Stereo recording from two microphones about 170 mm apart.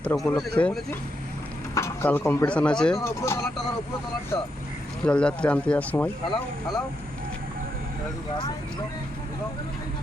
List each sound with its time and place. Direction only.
0.0 s speech: 5° left (ahead or behind)
1.7 s speech: 15° left (ahead or behind)
3.0 s speech: 15° left (ahead or behind)
5.0 s speech: 5° left (ahead or behind)